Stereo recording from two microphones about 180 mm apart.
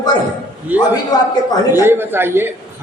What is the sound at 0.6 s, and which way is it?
Speech, 10° right (ahead or behind).